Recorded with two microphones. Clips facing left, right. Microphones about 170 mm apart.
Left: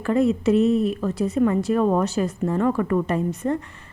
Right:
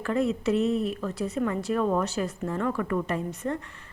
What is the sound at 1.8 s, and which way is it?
A woman's voice, 35° left (ahead or behind).